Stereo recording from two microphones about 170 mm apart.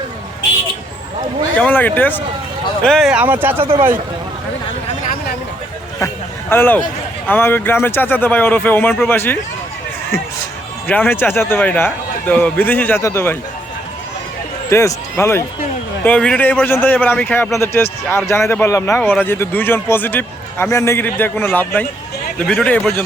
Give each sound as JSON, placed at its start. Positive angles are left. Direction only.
{"t": 1.5, "sound": "speech", "side_deg": 10}
{"t": 6.5, "sound": "speech", "side_deg": 10}
{"t": 10.8, "sound": "speech", "side_deg": 10}
{"t": 14.7, "sound": "a man's voice", "side_deg": 15}